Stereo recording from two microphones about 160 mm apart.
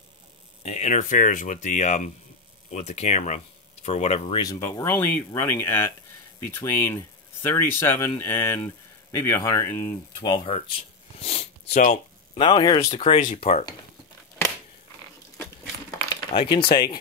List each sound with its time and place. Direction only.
0.7 s speech: 45° left (ahead or behind)
4.4 s speech: 20° left (ahead or behind)
10.2 s speech: 30° left (ahead or behind)
11.1 s a sound: 40° left (ahead or behind)
11.7 s speech: 50° left (ahead or behind)
12.4 s speech: 30° left (ahead or behind)
16.1 s speech: 30° left (ahead or behind)